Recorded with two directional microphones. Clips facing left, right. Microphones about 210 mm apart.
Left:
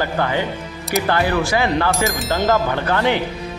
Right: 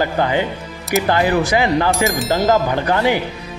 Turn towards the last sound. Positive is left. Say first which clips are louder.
# right 2 dB
turn(degrees=-10)  # may be behind; listen again after turning